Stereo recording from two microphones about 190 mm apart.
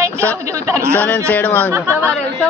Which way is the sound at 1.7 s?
15° right (ahead or behind).